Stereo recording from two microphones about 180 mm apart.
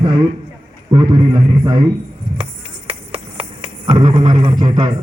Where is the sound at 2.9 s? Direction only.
35° right (ahead or behind).